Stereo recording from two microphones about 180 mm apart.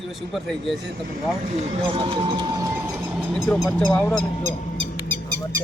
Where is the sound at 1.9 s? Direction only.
30° right (ahead or behind).